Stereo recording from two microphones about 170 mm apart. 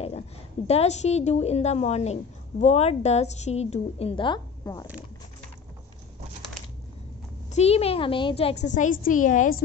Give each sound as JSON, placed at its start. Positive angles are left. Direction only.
{"t": 0.7, "sound": "a woman's voice", "side_deg": 40}
{"t": 7.5, "sound": "a woman's voice", "side_deg": 35}